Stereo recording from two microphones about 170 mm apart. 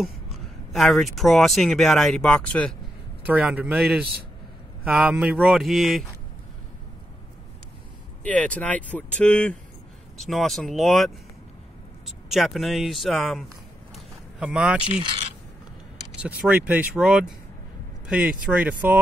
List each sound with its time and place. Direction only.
0.0 s speech: centre (ahead or behind)
3.3 s speech: 10° right (ahead or behind)
8.2 s speech: 10° left (ahead or behind)
12.3 s speech: centre (ahead or behind)
13.9 s a sound: 5° right (ahead or behind)
14.9 s speech: 35° right (ahead or behind)
16.2 s speech: 10° right (ahead or behind)